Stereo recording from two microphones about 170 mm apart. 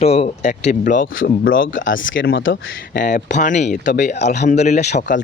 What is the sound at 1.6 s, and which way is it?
Speech, 90° left.